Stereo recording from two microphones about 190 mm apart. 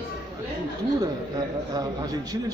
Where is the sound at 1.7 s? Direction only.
20° right (ahead or behind).